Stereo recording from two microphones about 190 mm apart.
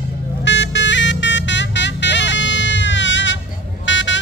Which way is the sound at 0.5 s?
70° left (ahead or behind).